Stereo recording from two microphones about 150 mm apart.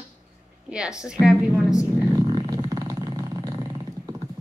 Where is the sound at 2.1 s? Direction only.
30° right (ahead or behind).